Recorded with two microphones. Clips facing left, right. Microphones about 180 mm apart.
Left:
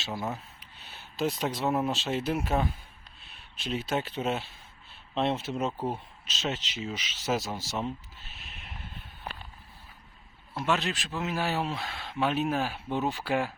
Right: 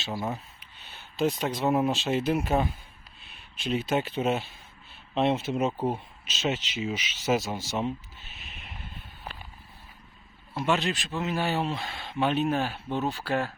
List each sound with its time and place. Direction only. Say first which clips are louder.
0.0 s a man's voice: right 2 dB; 5° right (ahead or behind)
3.3 s a sound: right 4 dB; centre (ahead or behind)
3.8 s a man's voice: right 3 dB; centre (ahead or behind)
5.7 s speech: right 4 dB; 15° right (ahead or behind)
6.2 s a man's voice: right 4 dB; 5° right (ahead or behind)
8.4 s a sound: right 2 dB; centre (ahead or behind)
10.5 s a man's voice: right 2 dB; centre (ahead or behind)